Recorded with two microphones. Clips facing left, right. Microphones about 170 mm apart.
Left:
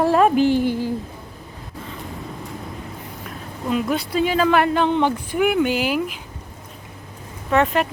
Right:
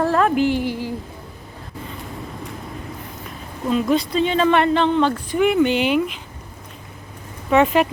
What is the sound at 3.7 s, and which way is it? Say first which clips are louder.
Speech: right 3 dB; 5° left (ahead or behind).